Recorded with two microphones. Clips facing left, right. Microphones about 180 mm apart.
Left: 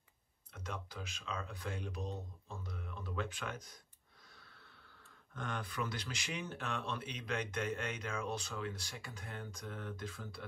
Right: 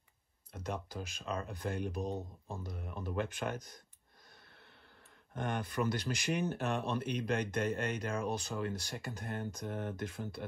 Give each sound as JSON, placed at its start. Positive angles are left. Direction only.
{"t": 0.9, "sound": "speech", "side_deg": -50}
{"t": 2.6, "sound": "speech", "side_deg": -45}
{"t": 5.3, "sound": "speech", "side_deg": -55}